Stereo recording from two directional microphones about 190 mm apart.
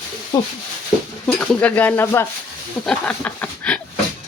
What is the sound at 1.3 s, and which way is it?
Speech, 5° left (ahead or behind).